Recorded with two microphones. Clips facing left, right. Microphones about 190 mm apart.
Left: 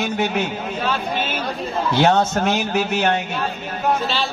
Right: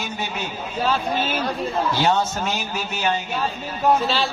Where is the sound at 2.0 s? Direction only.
60° left (ahead or behind).